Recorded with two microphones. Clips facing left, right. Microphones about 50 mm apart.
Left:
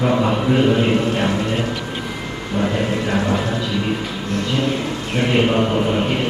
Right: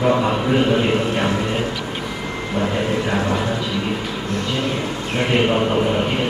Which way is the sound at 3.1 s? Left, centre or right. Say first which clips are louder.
Left 1 dB; centre.